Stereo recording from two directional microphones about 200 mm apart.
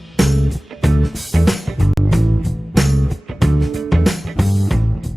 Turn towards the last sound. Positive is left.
turn(degrees=0)  # may be behind; listen again after turning